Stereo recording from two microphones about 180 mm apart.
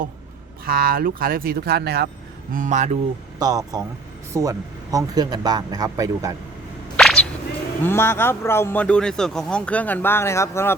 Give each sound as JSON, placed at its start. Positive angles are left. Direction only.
{"t": 0.6, "sound": "speech", "side_deg": -55}
{"t": 2.5, "sound": "speech", "side_deg": -45}
{"t": 3.3, "sound": "speech", "side_deg": -20}
{"t": 6.9, "sound": "whip", "side_deg": 5}
{"t": 7.9, "sound": "speech", "side_deg": 15}